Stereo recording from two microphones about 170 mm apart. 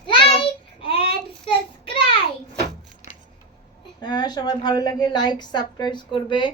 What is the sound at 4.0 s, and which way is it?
A woman's voice, 25° left (ahead or behind).